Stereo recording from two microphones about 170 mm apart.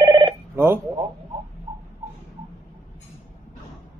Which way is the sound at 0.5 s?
15° right (ahead or behind).